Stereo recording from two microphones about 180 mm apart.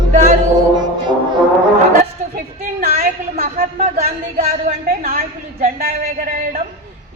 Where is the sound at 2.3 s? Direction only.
55° right (ahead or behind).